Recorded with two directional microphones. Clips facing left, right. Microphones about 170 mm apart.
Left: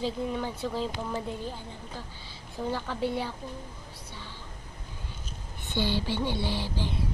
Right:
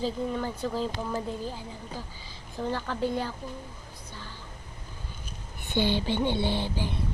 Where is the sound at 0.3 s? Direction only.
10° left (ahead or behind).